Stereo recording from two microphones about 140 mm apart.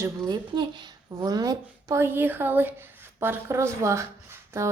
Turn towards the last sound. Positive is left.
turn(degrees=-20)  # may be behind; listen again after turning